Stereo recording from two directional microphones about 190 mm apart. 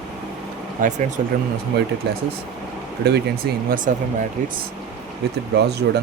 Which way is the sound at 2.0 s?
60° right (ahead or behind).